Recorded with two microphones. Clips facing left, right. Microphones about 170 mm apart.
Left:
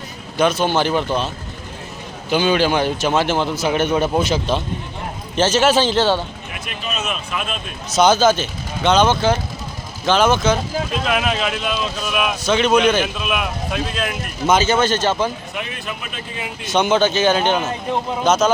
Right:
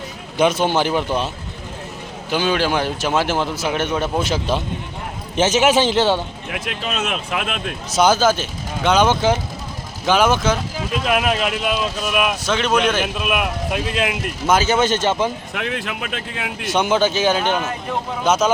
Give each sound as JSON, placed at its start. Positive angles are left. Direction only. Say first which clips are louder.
{"t": 0.3, "sound": "speech", "louder": "even", "side_deg": -20}
{"t": 2.3, "sound": "speech", "louder": "left 2 dB", "side_deg": 0}
{"t": 5.4, "sound": "a man's voice", "louder": "even", "side_deg": -15}
{"t": 6.5, "sound": "speech", "louder": "right 7 dB", "side_deg": -90}
{"t": 7.9, "sound": "speech", "louder": "left 2 dB", "side_deg": -10}
{"t": 14.8, "sound": "a man's voice", "louder": "even", "side_deg": -20}
{"t": 15.5, "sound": "speech", "louder": "right 3 dB", "side_deg": -80}
{"t": 16.6, "sound": "speech", "louder": "left 1 dB", "side_deg": -10}